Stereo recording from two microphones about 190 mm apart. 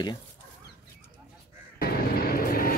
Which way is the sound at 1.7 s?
55° left (ahead or behind).